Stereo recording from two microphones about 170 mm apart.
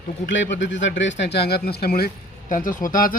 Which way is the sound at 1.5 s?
65° left (ahead or behind).